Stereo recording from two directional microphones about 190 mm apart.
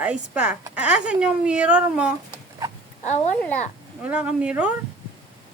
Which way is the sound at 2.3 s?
20° right (ahead or behind).